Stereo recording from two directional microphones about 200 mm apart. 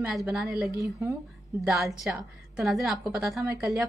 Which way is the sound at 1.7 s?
Centre (ahead or behind).